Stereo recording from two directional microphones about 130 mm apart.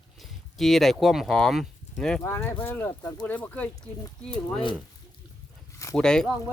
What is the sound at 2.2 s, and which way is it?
Speech, 20° left (ahead or behind).